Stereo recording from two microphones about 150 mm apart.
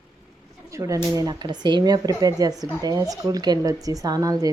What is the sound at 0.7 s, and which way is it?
Speech, 20° right (ahead or behind).